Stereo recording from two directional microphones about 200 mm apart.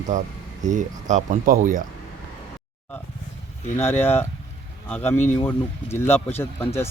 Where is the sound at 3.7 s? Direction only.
10° left (ahead or behind).